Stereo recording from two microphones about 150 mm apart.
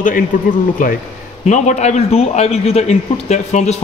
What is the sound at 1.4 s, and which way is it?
A man's voice, 50° left (ahead or behind).